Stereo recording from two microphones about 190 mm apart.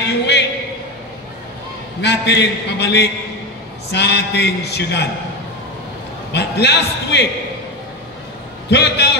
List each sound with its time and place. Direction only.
0.0 s a sound: 65° left (ahead or behind)
2.0 s a man's voice: 65° left (ahead or behind)
6.3 s a man's voice: 65° left (ahead or behind)
8.6 s a man's voice: 65° left (ahead or behind)